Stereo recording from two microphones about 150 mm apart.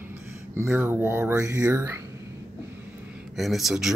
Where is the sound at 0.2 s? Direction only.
20° right (ahead or behind).